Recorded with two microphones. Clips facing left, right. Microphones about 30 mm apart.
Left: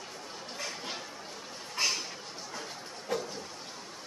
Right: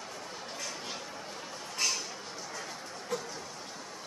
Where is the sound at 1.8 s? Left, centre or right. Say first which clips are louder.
Left 2 dB; left.